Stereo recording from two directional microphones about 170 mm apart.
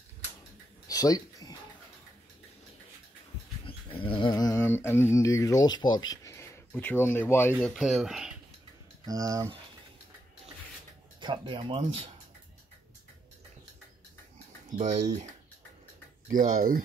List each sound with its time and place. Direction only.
0.8 s a sound: 20° left (ahead or behind)
3.6 s speech: 30° left (ahead or behind); by 7.5 s 10° left (ahead or behind)
7.6 s speech: centre (ahead or behind)
9.0 s speech: 20° right (ahead or behind)
11.1 s speech: 30° right (ahead or behind)
14.8 s speech: 45° right (ahead or behind)
16.3 s speech: 55° right (ahead or behind)